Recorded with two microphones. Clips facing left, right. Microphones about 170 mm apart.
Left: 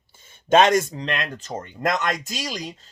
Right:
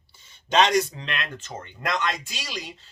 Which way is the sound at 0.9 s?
40° left (ahead or behind).